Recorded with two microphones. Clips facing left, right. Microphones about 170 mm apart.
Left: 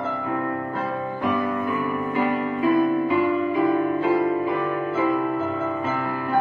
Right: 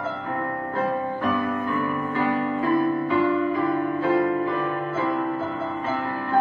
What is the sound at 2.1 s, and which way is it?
Music, 15° left (ahead or behind).